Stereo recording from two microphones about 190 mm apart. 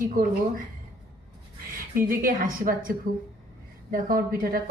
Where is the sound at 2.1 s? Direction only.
45° right (ahead or behind).